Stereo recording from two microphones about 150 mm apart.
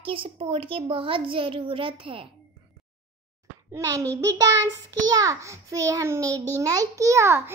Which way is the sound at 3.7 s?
20° right (ahead or behind).